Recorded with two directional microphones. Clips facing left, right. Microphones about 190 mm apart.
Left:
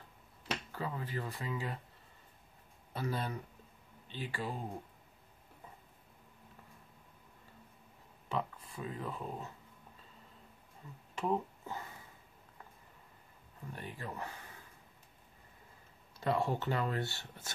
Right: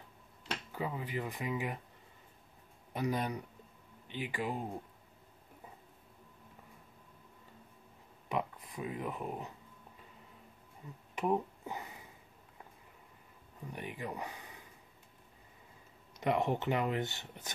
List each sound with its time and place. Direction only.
0.7 s speech: 15° right (ahead or behind)
2.9 s speech: 15° right (ahead or behind)
8.3 s speech: 15° right (ahead or behind)
10.8 s speech: 15° right (ahead or behind)
11.1 s a sound: 15° right (ahead or behind)
13.7 s speech: 15° right (ahead or behind)
16.2 s speech: 20° right (ahead or behind)